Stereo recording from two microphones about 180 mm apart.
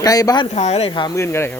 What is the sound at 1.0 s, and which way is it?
Speech, 15° left (ahead or behind).